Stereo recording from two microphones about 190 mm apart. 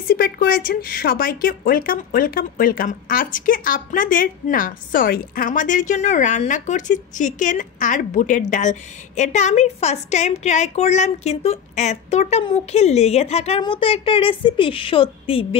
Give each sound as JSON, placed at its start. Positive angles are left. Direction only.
{"t": 0.1, "sound": "a woman's voice", "side_deg": 50}